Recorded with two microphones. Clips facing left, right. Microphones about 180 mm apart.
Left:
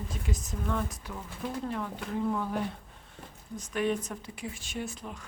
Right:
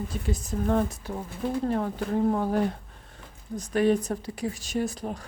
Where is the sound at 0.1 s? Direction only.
30° right (ahead or behind).